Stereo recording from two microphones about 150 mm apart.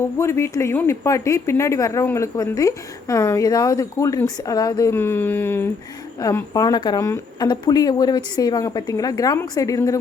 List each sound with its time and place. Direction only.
0.0 s speech: 15° left (ahead or behind)